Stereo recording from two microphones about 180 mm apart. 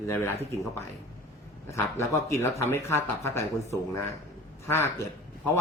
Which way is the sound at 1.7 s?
15° left (ahead or behind).